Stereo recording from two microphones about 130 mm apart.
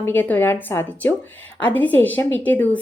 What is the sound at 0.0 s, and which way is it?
A woman's voice, 15° left (ahead or behind).